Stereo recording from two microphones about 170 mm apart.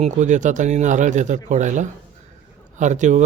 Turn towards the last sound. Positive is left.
turn(degrees=-45)  # may be behind; listen again after turning